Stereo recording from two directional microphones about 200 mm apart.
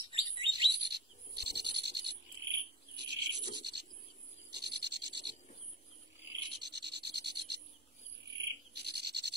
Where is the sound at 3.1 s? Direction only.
55° right (ahead or behind).